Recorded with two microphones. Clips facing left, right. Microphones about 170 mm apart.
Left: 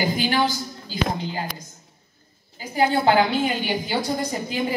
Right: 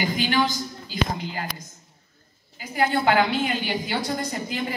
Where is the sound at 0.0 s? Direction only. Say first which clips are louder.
Left 1 dB; 35° left (ahead or behind).